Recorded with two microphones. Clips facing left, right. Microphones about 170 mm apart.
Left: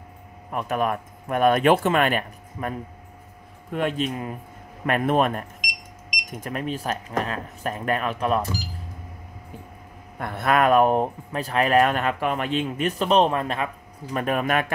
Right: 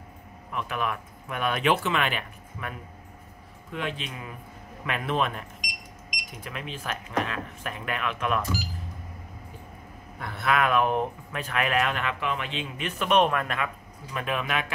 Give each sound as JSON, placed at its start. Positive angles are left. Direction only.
{"t": 0.5, "sound": "speech", "side_deg": 45}
{"t": 3.7, "sound": "speech", "side_deg": 45}
{"t": 6.4, "sound": "speech", "side_deg": 45}
{"t": 10.1, "sound": "speech", "side_deg": 50}
{"t": 14.1, "sound": "speech", "side_deg": 45}